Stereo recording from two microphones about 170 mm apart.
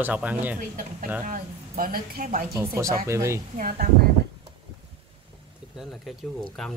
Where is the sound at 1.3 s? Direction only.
55° right (ahead or behind).